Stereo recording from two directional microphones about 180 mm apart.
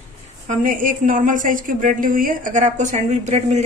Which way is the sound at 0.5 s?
50° right (ahead or behind).